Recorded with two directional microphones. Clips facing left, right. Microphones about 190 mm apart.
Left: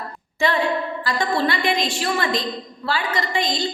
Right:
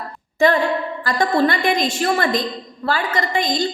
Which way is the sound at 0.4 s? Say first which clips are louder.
Right 4 dB; 45° right (ahead or behind).